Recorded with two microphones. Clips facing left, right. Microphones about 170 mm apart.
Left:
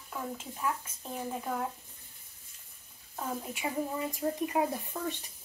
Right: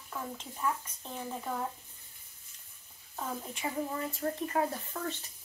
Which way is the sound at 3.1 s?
5° left (ahead or behind).